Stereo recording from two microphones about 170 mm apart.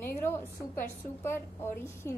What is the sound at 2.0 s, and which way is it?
Speech, 15° left (ahead or behind).